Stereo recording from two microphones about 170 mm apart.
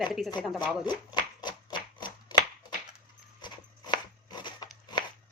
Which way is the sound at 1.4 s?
25° left (ahead or behind).